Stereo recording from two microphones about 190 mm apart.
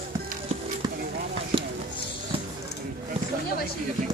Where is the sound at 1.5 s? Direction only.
30° right (ahead or behind).